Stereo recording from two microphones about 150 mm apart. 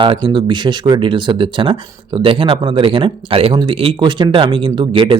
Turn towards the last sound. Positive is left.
turn(degrees=-35)  # may be behind; listen again after turning